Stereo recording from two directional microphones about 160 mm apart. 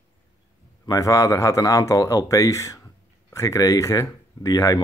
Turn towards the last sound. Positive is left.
turn(degrees=20)  # may be behind; listen again after turning